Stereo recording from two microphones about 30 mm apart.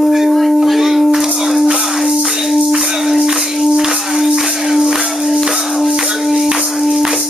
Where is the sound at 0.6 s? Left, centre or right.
Centre.